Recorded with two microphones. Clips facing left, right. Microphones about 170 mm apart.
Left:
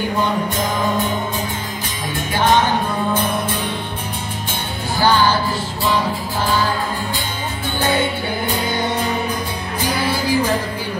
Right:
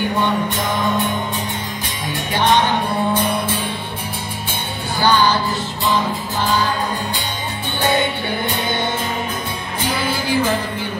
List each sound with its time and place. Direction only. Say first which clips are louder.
9.8 s music: left 1 dB; 25° right (ahead or behind)